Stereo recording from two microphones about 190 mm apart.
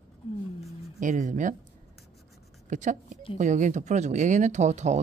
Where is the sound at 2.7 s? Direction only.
40° right (ahead or behind).